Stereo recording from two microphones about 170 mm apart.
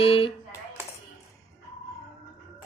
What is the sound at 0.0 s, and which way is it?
Speech, 30° left (ahead or behind).